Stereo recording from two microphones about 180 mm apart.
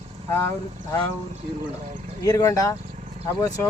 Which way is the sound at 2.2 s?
15° left (ahead or behind).